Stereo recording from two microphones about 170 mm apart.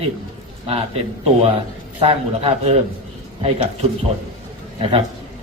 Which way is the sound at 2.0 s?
35° right (ahead or behind).